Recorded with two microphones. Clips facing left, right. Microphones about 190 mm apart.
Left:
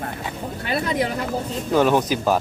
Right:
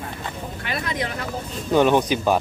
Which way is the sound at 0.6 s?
35° left (ahead or behind).